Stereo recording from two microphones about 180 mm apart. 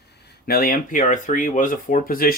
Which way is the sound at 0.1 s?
60° left (ahead or behind).